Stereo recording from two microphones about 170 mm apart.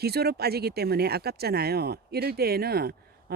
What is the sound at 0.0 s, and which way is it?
Speech, 70° right (ahead or behind).